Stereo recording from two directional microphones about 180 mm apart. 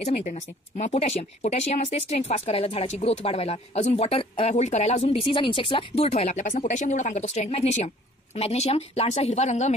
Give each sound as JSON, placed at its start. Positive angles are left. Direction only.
{"t": 0.0, "sound": "speech", "side_deg": 40}